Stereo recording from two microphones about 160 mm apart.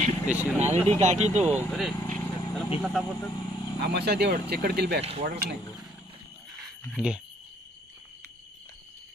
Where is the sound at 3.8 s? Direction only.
90° right.